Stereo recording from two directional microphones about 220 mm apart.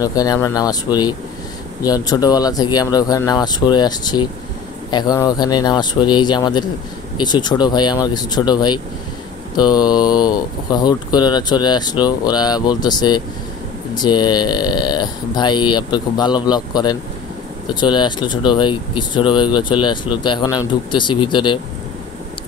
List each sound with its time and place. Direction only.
0.0 s speech: 15° left (ahead or behind)
1.8 s speech: 15° left (ahead or behind)